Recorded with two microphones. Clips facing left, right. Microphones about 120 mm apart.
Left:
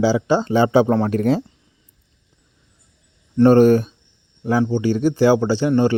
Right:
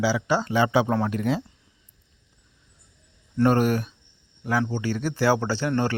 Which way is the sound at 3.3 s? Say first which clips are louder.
Left 9 dB; 30° left (ahead or behind).